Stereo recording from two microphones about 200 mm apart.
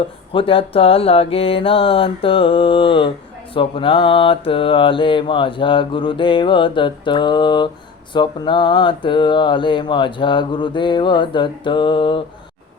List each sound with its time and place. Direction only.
0.3 s mantra: 25° left (ahead or behind)